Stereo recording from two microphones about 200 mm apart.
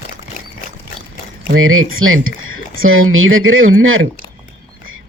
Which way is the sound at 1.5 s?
90° right.